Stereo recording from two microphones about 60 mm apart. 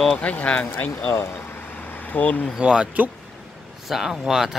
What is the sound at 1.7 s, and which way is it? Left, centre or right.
Vehicle, left.